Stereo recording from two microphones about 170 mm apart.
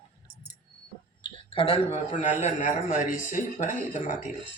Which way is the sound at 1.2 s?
30° left (ahead or behind).